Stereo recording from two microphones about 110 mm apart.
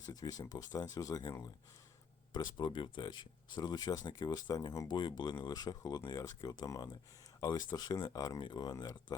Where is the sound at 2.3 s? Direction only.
40° left (ahead or behind).